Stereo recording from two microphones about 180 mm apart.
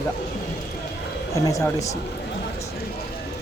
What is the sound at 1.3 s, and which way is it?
Speech, 20° left (ahead or behind).